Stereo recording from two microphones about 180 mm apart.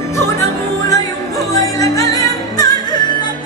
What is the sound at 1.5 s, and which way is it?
Music, 20° left (ahead or behind).